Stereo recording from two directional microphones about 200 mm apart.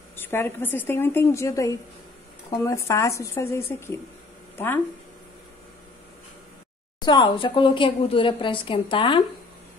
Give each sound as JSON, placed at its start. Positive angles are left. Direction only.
{"t": 0.1, "sound": "speech", "side_deg": 10}
{"t": 7.0, "sound": "a woman's voice", "side_deg": 20}